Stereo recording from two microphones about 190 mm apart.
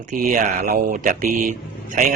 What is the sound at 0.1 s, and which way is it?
Speech, 45° right (ahead or behind).